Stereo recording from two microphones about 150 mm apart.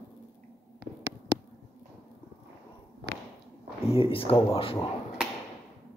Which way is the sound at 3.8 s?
40° left (ahead or behind).